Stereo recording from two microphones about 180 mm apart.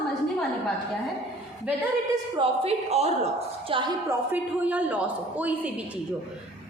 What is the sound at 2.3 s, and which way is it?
A woman's voice, 35° right (ahead or behind).